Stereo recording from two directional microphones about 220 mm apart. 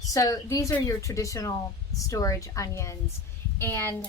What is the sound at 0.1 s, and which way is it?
Speech, 15° left (ahead or behind).